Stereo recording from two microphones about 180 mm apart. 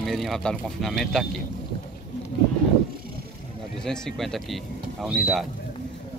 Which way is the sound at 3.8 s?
5° left (ahead or behind).